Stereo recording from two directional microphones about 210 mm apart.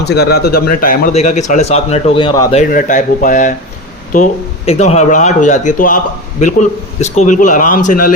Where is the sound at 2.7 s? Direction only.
40° left (ahead or behind).